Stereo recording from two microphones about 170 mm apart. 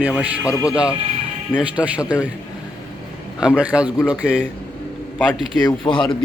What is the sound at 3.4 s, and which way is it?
Speech, 5° right (ahead or behind).